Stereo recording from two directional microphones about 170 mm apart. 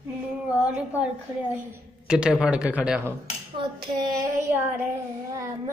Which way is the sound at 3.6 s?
25° right (ahead or behind).